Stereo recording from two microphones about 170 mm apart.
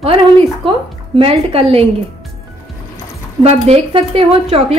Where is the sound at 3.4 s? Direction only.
35° right (ahead or behind).